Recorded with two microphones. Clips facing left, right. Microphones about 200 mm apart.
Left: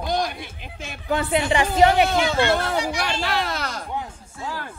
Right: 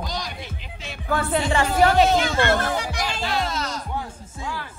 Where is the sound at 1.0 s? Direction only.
15° left (ahead or behind).